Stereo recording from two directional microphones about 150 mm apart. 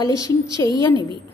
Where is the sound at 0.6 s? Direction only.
20° left (ahead or behind).